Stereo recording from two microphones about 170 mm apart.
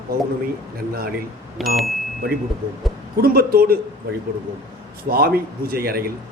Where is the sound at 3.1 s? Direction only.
60° right (ahead or behind).